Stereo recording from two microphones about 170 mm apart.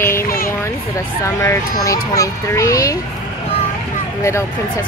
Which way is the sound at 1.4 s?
15° left (ahead or behind).